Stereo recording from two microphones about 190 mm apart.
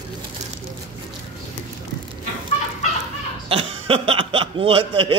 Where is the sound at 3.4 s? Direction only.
30° right (ahead or behind).